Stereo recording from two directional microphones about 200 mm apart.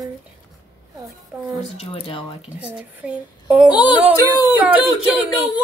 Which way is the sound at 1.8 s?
25° left (ahead or behind).